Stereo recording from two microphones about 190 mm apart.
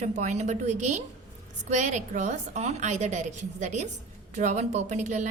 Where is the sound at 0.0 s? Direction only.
40° right (ahead or behind).